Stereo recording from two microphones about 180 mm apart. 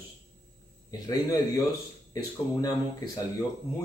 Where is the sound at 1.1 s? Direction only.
20° left (ahead or behind).